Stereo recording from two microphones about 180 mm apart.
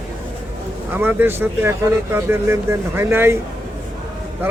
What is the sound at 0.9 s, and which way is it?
Speech, 10° right (ahead or behind).